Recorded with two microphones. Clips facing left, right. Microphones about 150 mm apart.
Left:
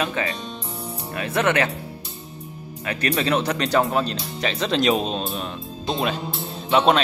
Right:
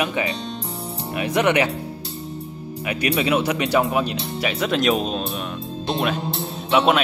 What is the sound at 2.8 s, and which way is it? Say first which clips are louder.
Speech: right 2 dB; 10° right (ahead or behind).